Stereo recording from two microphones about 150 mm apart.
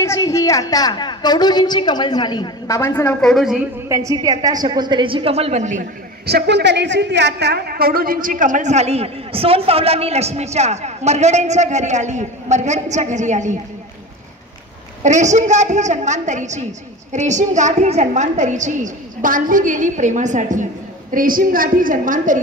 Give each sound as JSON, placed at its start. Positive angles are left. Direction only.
{"t": 0.0, "sound": "a woman's voice", "side_deg": 20}
{"t": 3.2, "sound": "a woman's voice", "side_deg": 0}
{"t": 3.9, "sound": "a woman's voice", "side_deg": -25}
{"t": 6.2, "sound": "a man's voice", "side_deg": -90}
{"t": 15.0, "sound": "a woman's voice", "side_deg": -50}
{"t": 21.1, "sound": "a woman's voice", "side_deg": -70}